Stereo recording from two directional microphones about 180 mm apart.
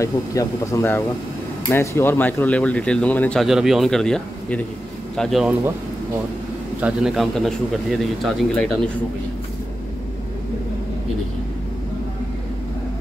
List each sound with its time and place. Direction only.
0.0 s a man's voice: 15° left (ahead or behind); by 5.6 s centre (ahead or behind)
6.8 s a man's voice: 5° right (ahead or behind)